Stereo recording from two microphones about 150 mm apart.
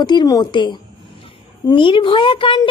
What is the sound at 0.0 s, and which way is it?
A woman's voice, 30° left (ahead or behind).